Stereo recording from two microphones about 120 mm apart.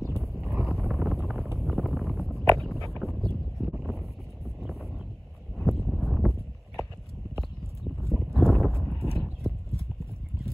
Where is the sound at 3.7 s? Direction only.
Centre (ahead or behind).